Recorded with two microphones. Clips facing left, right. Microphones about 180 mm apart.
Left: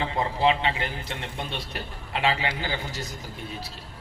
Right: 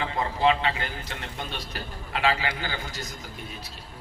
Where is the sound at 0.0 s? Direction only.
30° left (ahead or behind).